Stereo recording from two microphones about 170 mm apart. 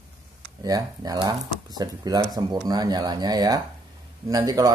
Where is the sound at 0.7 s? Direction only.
20° right (ahead or behind).